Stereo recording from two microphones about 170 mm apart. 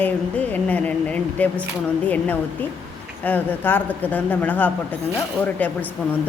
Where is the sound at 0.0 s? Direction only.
10° left (ahead or behind).